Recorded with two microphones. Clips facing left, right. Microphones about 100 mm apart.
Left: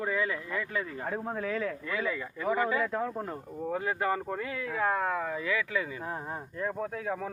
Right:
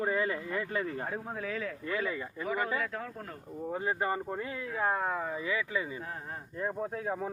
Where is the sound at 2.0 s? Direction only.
25° right (ahead or behind).